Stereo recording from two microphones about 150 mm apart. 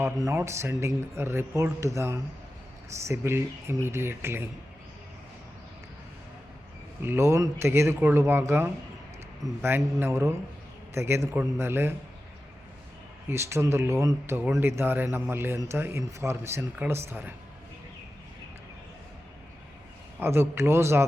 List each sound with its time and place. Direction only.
0.0 s speech: 20° right (ahead or behind)
7.0 s speech: 15° right (ahead or behind)
13.2 s speech: 15° right (ahead or behind)
20.1 s speech: 15° right (ahead or behind)